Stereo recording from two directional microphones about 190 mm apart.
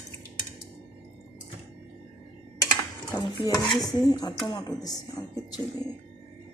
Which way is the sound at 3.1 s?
20° left (ahead or behind).